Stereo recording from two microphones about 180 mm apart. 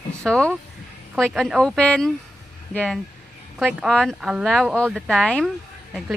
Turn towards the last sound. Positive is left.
turn(degrees=0)  # may be behind; listen again after turning